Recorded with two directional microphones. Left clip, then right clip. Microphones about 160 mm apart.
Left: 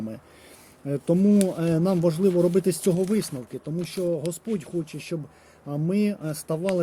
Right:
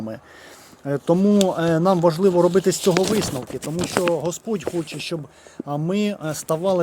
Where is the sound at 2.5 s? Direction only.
10° left (ahead or behind).